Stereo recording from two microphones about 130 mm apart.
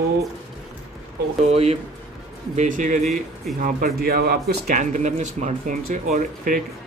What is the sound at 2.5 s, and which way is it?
Speech, 85° right.